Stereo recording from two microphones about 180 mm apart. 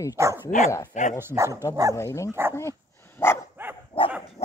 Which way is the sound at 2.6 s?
15° left (ahead or behind).